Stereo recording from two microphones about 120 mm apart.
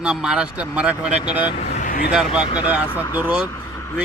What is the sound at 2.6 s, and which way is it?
Speech, 10° right (ahead or behind).